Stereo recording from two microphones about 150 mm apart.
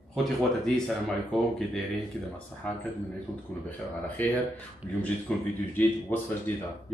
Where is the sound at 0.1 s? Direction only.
5° left (ahead or behind).